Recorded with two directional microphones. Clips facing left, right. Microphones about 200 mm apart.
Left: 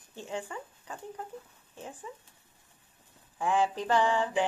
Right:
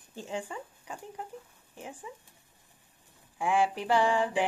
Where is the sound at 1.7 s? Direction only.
10° right (ahead or behind).